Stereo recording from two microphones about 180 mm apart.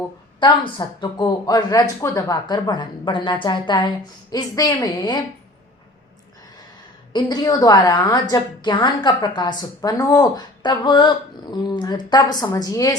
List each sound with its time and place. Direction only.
0.3 s speech: 25° left (ahead or behind)
7.1 s speech: 25° left (ahead or behind)